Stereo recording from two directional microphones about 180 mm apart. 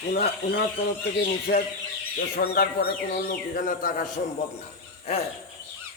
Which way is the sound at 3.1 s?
50° left (ahead or behind).